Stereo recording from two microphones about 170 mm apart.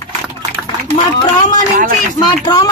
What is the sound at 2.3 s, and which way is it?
Speech, 25° left (ahead or behind).